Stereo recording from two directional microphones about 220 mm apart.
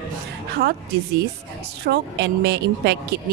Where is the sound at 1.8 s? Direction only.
50° right (ahead or behind).